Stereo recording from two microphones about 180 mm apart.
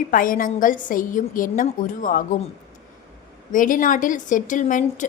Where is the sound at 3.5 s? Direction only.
45° left (ahead or behind).